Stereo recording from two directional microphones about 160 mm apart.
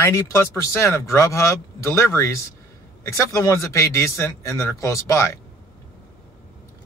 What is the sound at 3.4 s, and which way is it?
Speech, 15° left (ahead or behind).